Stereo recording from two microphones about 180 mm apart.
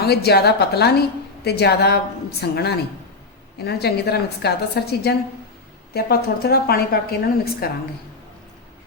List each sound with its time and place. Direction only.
0.0 s a woman's voice: 65° left (ahead or behind)